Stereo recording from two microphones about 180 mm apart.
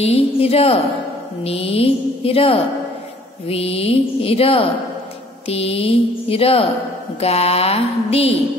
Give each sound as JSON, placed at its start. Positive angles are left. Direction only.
{"t": 0.0, "sound": "speech", "side_deg": 35}